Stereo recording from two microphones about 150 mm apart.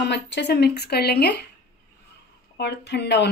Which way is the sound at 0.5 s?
90° left.